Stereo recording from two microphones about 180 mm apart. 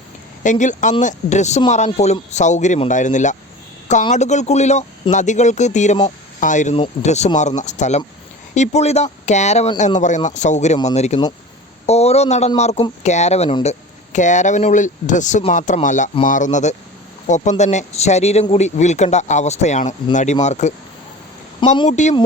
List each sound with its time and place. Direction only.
0.4 s speech: 45° left (ahead or behind)
21.8 s speech: 40° left (ahead or behind)